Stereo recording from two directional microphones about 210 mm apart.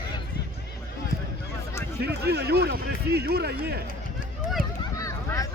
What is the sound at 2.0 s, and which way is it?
Speech, 50° right (ahead or behind).